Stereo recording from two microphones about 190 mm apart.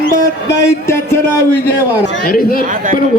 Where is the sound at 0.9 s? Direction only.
15° left (ahead or behind).